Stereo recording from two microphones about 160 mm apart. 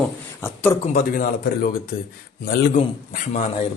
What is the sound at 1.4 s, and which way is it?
Speech, 70° left (ahead or behind).